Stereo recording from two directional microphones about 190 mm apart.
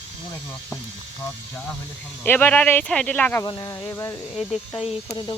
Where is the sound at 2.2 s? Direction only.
10° left (ahead or behind).